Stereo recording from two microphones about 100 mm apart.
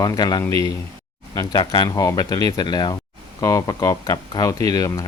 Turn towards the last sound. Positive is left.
turn(degrees=35)  # may be behind; listen again after turning